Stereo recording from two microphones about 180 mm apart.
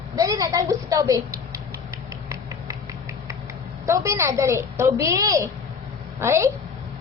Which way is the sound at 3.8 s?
15° right (ahead or behind).